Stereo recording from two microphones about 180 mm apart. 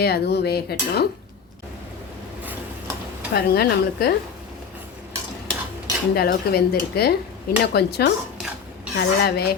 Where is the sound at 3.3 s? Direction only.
60° left (ahead or behind).